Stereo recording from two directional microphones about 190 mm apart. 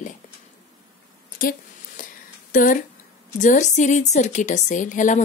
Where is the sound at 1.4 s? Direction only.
45° left (ahead or behind).